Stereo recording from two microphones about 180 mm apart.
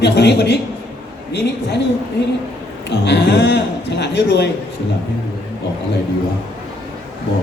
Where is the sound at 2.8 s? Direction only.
70° left (ahead or behind).